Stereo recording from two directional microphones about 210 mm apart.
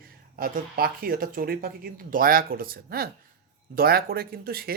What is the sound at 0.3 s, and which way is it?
Speech, 45° right (ahead or behind).